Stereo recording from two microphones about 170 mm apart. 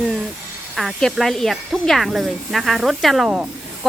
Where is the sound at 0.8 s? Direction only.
Centre (ahead or behind).